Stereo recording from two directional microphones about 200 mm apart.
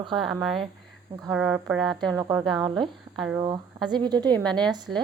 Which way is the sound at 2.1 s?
15° right (ahead or behind).